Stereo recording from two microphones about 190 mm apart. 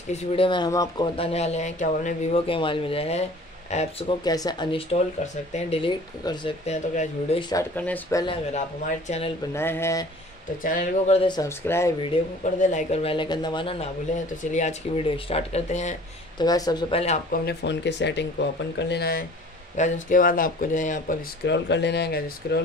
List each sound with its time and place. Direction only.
0.1 s speech: 25° left (ahead or behind)
4.2 s speech: 20° left (ahead or behind)
7.3 s speech: 25° left (ahead or behind)
7.7 s speech: 10° left (ahead or behind)
8.8 s speech: 35° left (ahead or behind)
9.5 s speech: 15° left (ahead or behind)
10.6 s speech: 45° left (ahead or behind)
11.1 s speech: 20° left (ahead or behind)
12.1 s speech: 30° left (ahead or behind)
16.3 s speech: 20° left (ahead or behind)
16.9 s speech: 35° left (ahead or behind)
17.3 s speech: 60° left (ahead or behind); by 21.2 s 40° left (ahead or behind)
21.5 s speech: 65° left (ahead or behind)